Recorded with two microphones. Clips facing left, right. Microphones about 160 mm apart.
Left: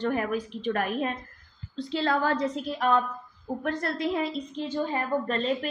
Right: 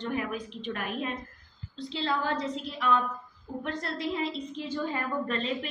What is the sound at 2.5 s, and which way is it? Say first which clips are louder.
Speech: left 3 dB; 40° left (ahead or behind).